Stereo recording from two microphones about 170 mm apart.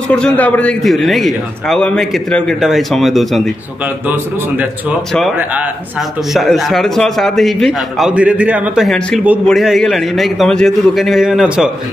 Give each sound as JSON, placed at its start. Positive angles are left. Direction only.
{"t": 0.1, "sound": "a man's voice", "side_deg": 10}